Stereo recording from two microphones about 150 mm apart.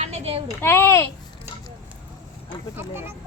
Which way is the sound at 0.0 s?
45° right (ahead or behind).